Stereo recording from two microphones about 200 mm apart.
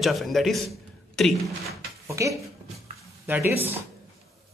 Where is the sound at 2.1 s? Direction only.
15° right (ahead or behind).